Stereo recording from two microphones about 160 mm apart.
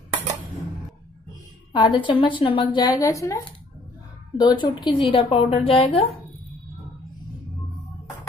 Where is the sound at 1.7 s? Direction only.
30° left (ahead or behind).